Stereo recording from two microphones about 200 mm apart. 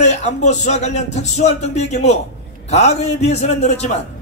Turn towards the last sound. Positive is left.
turn(degrees=35)  # may be behind; listen again after turning